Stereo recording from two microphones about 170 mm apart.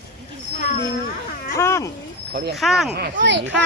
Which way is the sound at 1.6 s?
15° left (ahead or behind).